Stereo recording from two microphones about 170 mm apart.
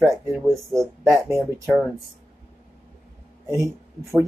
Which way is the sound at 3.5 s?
20° right (ahead or behind).